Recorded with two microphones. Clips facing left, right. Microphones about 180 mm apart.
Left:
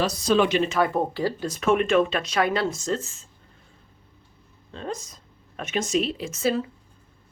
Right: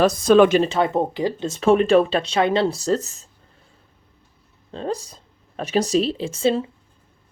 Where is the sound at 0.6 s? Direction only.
25° right (ahead or behind).